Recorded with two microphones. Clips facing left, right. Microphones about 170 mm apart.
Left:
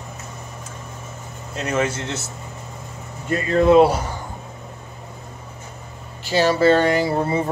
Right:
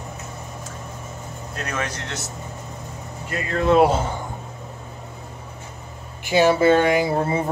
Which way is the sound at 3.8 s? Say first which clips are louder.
Even; 25° right (ahead or behind).